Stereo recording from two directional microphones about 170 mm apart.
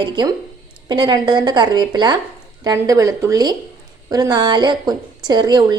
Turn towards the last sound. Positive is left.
turn(degrees=-25)  # may be behind; listen again after turning